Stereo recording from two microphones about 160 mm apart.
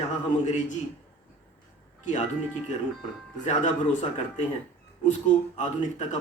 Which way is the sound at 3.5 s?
45° left (ahead or behind).